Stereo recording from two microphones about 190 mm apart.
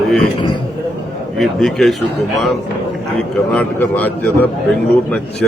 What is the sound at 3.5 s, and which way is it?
Speech, 10° left (ahead or behind).